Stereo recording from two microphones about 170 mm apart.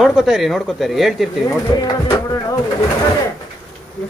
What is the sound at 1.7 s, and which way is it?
Speech, 20° left (ahead or behind).